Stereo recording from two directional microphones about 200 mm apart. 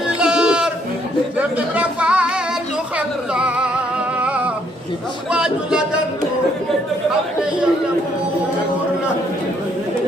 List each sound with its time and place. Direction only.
0.2 s sheep: 5° right (ahead or behind)
1.4 s a sound: 5° right (ahead or behind)
3.3 s music: 5° right (ahead or behind)
4.2 s singing: 5° right (ahead or behind)
5.3 s speech: 5° right (ahead or behind)